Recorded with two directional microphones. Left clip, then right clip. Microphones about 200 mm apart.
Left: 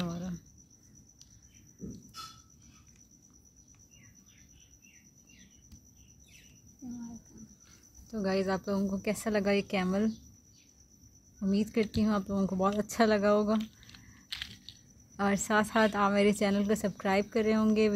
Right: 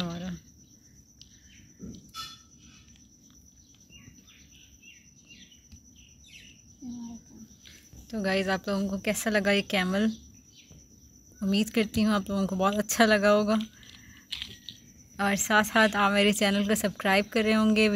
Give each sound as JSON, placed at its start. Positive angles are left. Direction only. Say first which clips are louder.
{"t": 0.1, "sound": "cricket", "louder": "right 3 dB", "side_deg": -10}
{"t": 7.6, "sound": "speech", "louder": "right 7 dB", "side_deg": 0}
{"t": 11.3, "sound": "a woman's voice", "louder": "right 3 dB", "side_deg": 0}
{"t": 13.8, "sound": "a sound", "louder": "right 4 dB", "side_deg": 15}
{"t": 15.1, "sound": "speech", "louder": "right 4 dB", "side_deg": 10}